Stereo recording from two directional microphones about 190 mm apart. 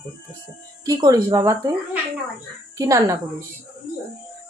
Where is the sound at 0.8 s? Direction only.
20° right (ahead or behind).